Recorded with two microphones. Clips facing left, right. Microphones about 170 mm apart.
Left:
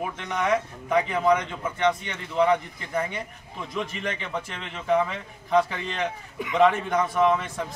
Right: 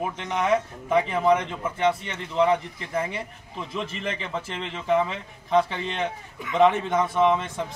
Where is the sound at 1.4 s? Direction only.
5° right (ahead or behind).